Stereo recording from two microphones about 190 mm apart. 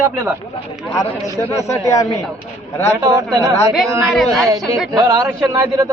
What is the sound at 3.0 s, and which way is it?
Speech, 20° right (ahead or behind).